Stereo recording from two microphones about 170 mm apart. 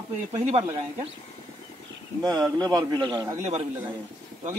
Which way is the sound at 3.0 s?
25° right (ahead or behind).